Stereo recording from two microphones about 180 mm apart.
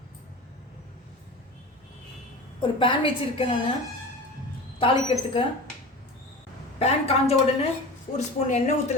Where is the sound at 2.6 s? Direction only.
30° left (ahead or behind).